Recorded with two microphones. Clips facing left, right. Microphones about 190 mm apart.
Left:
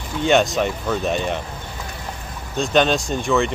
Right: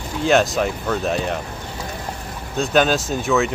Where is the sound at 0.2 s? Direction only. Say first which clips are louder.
Even; centre (ahead or behind).